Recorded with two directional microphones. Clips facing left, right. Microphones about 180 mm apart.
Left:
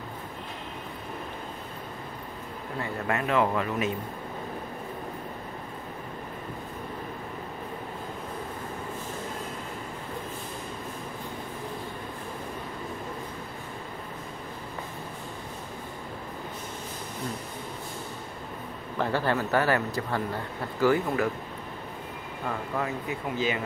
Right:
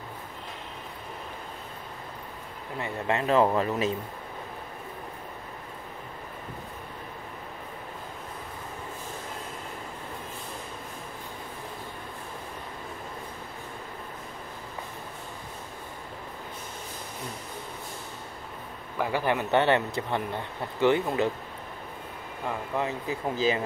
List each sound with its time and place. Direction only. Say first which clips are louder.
2.8 s speech: right 1 dB; 25° right (ahead or behind)
18.9 s a man's voice: even; 10° right (ahead or behind)
22.8 s speech: right 3 dB; 30° right (ahead or behind)